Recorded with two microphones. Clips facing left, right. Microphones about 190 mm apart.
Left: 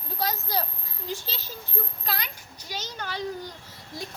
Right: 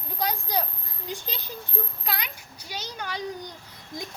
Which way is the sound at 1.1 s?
15° right (ahead or behind).